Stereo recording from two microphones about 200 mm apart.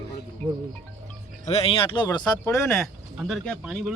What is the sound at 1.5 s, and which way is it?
Speech, 30° left (ahead or behind).